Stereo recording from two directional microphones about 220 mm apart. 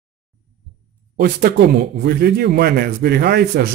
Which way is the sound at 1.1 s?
40° right (ahead or behind).